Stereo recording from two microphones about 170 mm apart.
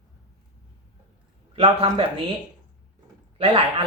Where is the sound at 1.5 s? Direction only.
35° right (ahead or behind).